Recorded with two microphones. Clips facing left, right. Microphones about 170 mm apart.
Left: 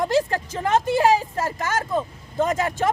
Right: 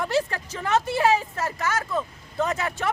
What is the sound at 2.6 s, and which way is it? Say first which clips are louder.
Speech: left 5 dB; 45° left (ahead or behind).